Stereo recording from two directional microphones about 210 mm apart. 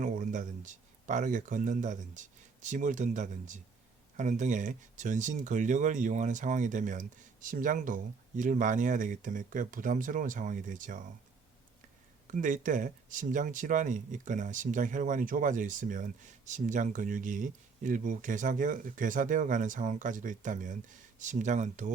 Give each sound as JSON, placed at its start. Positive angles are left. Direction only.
{"t": 0.0, "sound": "speech", "side_deg": -40}
{"t": 12.3, "sound": "speech", "side_deg": -40}